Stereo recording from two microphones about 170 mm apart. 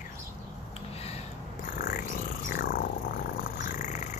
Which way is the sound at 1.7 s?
55° left (ahead or behind).